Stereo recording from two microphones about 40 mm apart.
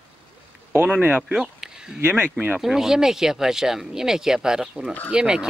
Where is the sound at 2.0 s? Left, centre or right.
Right.